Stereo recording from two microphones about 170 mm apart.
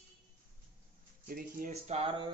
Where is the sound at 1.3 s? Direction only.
55° right (ahead or behind); by 2.3 s 35° right (ahead or behind).